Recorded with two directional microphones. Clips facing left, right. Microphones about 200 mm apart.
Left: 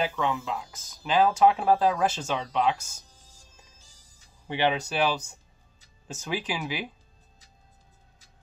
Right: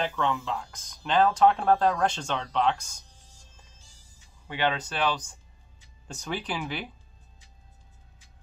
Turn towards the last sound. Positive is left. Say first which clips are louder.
# left 2 dB
turn(degrees=5)  # may be behind; listen again after turning